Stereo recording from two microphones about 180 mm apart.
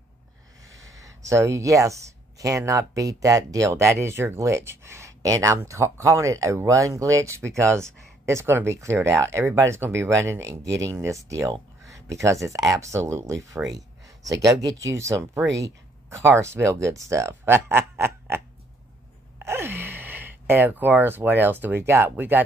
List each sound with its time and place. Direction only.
0.7 s speech: 20° right (ahead or behind)